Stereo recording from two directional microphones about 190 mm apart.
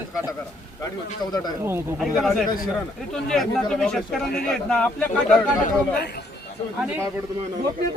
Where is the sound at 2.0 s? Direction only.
Centre (ahead or behind).